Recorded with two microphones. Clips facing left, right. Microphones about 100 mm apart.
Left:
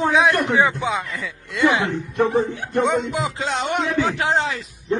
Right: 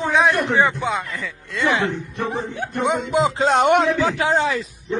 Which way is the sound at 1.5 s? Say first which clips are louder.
Left 2 dB; 15° left (ahead or behind).